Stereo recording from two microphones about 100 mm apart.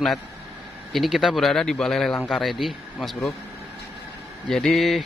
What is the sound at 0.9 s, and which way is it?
Speech, centre (ahead or behind).